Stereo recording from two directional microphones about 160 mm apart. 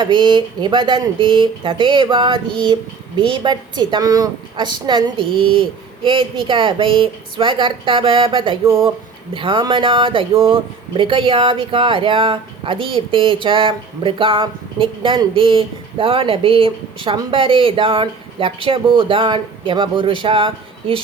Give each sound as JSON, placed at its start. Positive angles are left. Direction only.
{"t": 0.0, "sound": "speech", "side_deg": -30}